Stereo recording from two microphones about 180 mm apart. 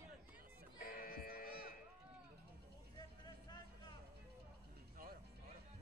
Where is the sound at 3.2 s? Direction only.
25° left (ahead or behind).